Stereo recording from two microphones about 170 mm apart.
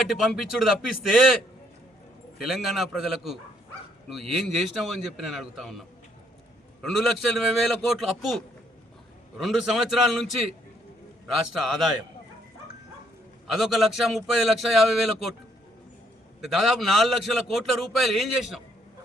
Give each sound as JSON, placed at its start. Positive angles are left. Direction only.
{"t": 0.1, "sound": "a man's voice", "side_deg": 0}
{"t": 2.4, "sound": "a man's voice", "side_deg": 0}
{"t": 6.8, "sound": "a man's voice", "side_deg": 0}
{"t": 11.5, "sound": "a man's voice", "side_deg": 0}
{"t": 13.5, "sound": "a man's voice", "side_deg": 0}
{"t": 16.4, "sound": "a man's voice", "side_deg": 0}